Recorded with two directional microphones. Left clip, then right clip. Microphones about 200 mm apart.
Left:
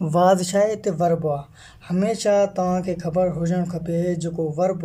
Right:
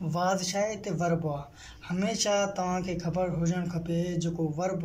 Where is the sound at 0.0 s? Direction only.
35° left (ahead or behind).